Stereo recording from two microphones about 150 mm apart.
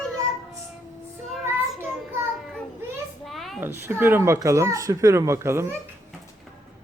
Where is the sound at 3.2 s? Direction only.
Centre (ahead or behind).